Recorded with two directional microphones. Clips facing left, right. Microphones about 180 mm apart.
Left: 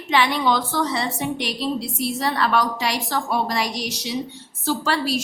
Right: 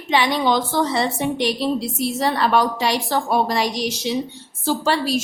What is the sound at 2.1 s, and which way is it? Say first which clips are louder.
A woman's voice: right 3 dB; 25° right (ahead or behind).